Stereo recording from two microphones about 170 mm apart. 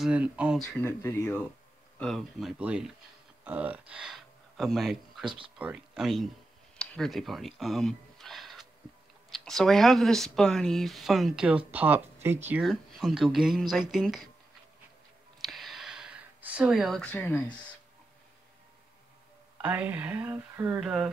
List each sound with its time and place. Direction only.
0.0 s speech: 5° right (ahead or behind)
0.6 s speech: 10° left (ahead or behind)
2.0 s speech: centre (ahead or behind)
5.2 s speech: 30° right (ahead or behind)
5.6 s speech: 5° right (ahead or behind)
6.8 s a sound: centre (ahead or behind)
9.3 s speech: centre (ahead or behind)
12.6 s speech: centre (ahead or behind)
15.4 s a sound: centre (ahead or behind)
19.6 s speech: 10° right (ahead or behind)